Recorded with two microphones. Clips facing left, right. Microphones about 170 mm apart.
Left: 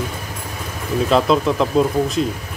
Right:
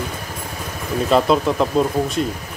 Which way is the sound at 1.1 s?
5° right (ahead or behind).